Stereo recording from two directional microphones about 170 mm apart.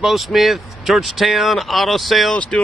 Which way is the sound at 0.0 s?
Centre (ahead or behind).